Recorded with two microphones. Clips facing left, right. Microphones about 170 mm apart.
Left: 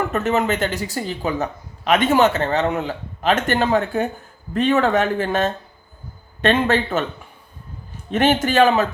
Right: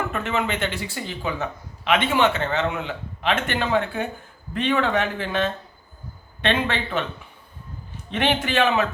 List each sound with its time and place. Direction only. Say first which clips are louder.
0.1 s speech: left 6 dB; 40° left (ahead or behind)
8.1 s speech: left 5 dB; 45° left (ahead or behind)